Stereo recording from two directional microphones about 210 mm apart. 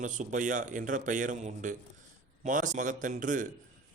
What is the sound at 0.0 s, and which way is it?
Speech, 35° right (ahead or behind).